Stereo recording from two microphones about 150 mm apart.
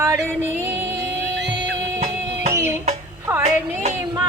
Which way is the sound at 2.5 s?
20° right (ahead or behind).